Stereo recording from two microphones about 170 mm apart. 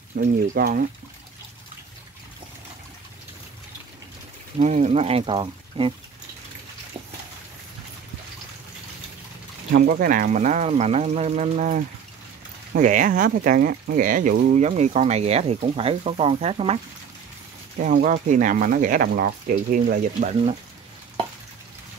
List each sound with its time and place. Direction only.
0.2 s speech: 55° right (ahead or behind)
4.6 s speech: 45° right (ahead or behind)
9.7 s speech: 60° right (ahead or behind); by 16.8 s 35° right (ahead or behind)
17.7 s speech: 50° right (ahead or behind)